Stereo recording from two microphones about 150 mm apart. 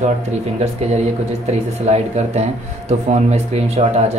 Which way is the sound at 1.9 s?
45° right (ahead or behind).